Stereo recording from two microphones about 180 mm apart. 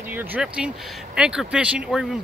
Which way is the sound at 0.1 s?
10° right (ahead or behind).